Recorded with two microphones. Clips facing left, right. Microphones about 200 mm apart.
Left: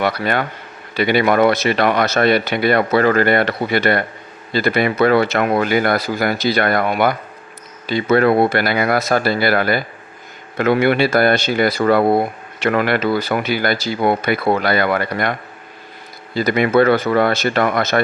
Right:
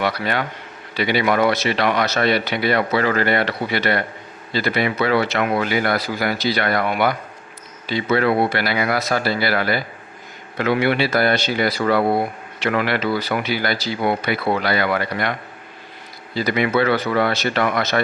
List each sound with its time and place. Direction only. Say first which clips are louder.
0.0 s speech: left 3 dB; 50° left (ahead or behind)